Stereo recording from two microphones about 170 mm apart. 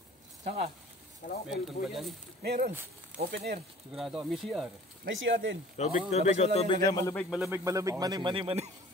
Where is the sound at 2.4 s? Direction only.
70° right (ahead or behind).